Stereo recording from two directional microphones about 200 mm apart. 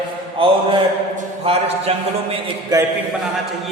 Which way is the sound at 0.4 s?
25° right (ahead or behind).